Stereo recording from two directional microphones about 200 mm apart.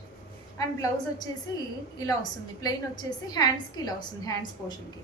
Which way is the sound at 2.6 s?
20° left (ahead or behind).